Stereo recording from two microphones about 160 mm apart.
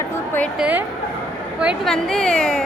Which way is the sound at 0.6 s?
10° right (ahead or behind).